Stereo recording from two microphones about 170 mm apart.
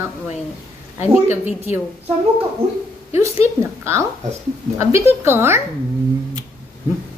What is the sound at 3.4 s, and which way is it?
A woman's voice, 15° right (ahead or behind).